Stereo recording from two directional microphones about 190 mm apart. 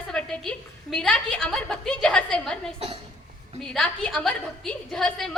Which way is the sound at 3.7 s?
5° left (ahead or behind).